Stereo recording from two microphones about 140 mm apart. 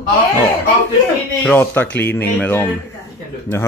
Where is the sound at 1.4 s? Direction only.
15° left (ahead or behind).